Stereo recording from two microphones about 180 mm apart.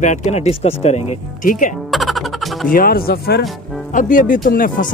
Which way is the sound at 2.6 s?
55° left (ahead or behind).